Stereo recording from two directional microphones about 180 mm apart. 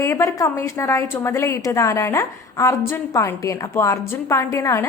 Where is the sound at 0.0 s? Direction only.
15° left (ahead or behind).